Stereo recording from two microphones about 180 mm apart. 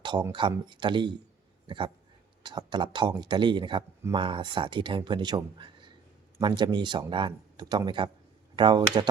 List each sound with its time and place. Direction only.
0.0 s speech: 25° right (ahead or behind)